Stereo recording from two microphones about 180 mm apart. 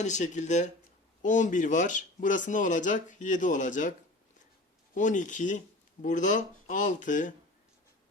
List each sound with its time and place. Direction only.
0.0 s speech: 40° left (ahead or behind)
4.9 s speech: 45° left (ahead or behind)